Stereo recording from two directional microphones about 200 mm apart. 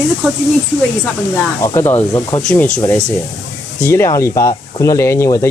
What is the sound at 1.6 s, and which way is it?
Speech, 15° left (ahead or behind).